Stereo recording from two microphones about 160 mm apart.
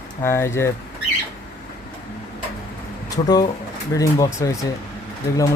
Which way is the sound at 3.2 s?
25° left (ahead or behind).